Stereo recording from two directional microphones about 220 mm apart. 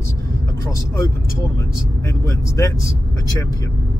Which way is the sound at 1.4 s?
15° left (ahead or behind).